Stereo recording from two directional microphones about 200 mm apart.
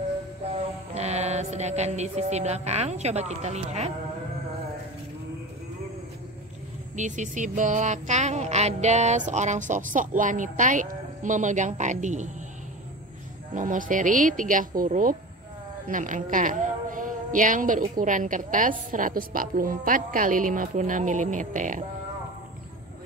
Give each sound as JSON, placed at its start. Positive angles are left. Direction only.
{"t": 0.9, "sound": "music", "side_deg": -35}
{"t": 7.0, "sound": "a woman's voice", "side_deg": -40}
{"t": 13.6, "sound": "a woman's voice", "side_deg": -40}